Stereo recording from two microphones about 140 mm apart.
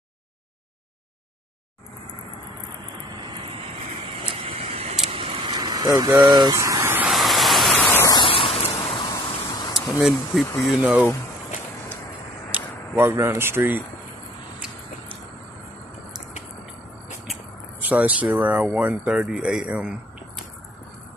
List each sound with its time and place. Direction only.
3.2 s vehicle: 35° right (ahead or behind); by 7.1 s 15° right (ahead or behind)
7.1 s vehicle: centre (ahead or behind)
8.1 s vehicle: 35° left (ahead or behind)
9.1 s a sound: 25° left (ahead or behind)
9.8 s speech: 5° right (ahead or behind)
12.4 s speech: 15° right (ahead or behind)
17.8 s speech: 10° right (ahead or behind)